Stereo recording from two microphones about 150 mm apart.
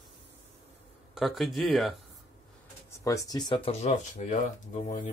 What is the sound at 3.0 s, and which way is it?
Speech, 25° left (ahead or behind).